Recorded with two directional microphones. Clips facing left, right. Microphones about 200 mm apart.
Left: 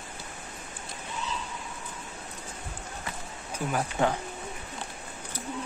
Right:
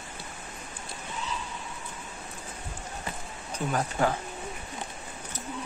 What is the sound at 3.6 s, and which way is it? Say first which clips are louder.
Speech: right 1 dB; 5° left (ahead or behind).